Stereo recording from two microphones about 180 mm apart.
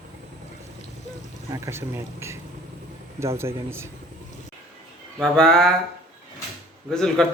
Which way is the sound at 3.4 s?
15° right (ahead or behind).